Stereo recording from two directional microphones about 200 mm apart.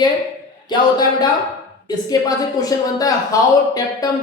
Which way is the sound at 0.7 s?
20° left (ahead or behind).